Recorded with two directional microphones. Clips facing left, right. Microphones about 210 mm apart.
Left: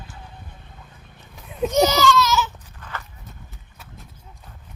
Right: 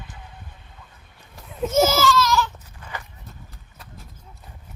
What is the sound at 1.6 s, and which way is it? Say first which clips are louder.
Baby cry: left 1 dB; 5° right (ahead or behind).